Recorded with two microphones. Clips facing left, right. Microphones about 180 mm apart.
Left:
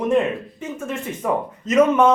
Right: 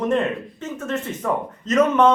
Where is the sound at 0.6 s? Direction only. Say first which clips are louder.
Right 1 dB; 10° left (ahead or behind).